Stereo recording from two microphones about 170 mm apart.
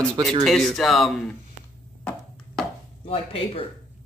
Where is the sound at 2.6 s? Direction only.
Centre (ahead or behind).